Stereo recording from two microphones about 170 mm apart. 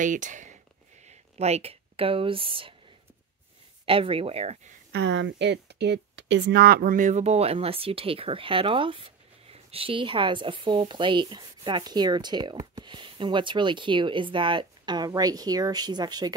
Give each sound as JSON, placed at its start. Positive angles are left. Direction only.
{"t": 0.0, "sound": "speech", "side_deg": -50}
{"t": 3.8, "sound": "speech", "side_deg": -30}
{"t": 4.9, "sound": "speech", "side_deg": -90}